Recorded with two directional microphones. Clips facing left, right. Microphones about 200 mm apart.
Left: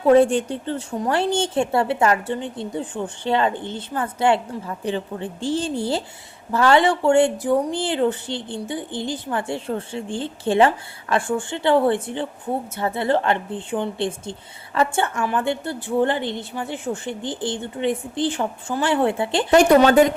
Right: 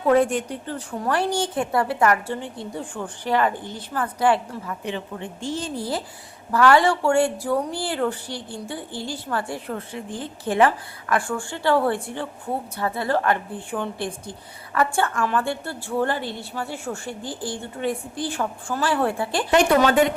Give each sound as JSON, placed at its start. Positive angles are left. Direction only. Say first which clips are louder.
{"t": 0.1, "sound": "a woman's voice", "louder": "left 4 dB", "side_deg": 30}
{"t": 19.5, "sound": "speech", "louder": "left 4 dB", "side_deg": 40}